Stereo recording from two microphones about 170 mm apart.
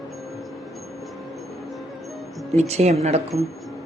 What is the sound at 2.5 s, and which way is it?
Speech, 40° right (ahead or behind).